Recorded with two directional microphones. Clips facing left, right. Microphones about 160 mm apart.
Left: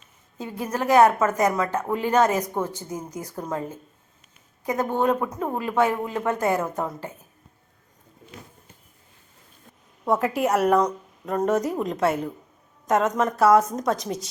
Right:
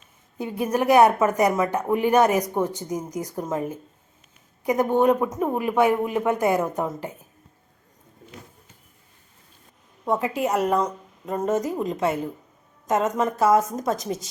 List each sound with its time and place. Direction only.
0.3 s speech: 15° right (ahead or behind)
10.1 s a woman's voice: centre (ahead or behind)